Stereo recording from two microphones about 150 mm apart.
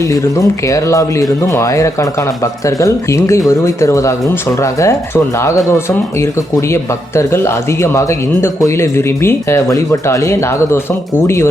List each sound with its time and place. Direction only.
0.0 s speech: 20° left (ahead or behind)